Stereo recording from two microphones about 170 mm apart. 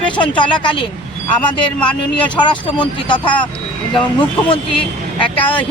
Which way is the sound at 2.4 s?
25° left (ahead or behind).